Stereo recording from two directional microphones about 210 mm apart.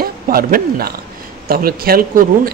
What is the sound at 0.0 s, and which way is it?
Speech, 45° right (ahead or behind).